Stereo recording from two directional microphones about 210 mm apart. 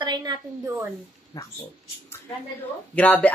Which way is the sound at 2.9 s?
10° left (ahead or behind).